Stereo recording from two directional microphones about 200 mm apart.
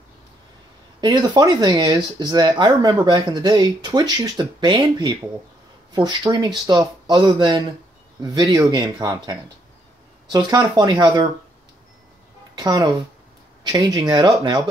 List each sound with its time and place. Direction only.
1.0 s speech: 20° right (ahead or behind)
12.5 s speech: 20° right (ahead or behind)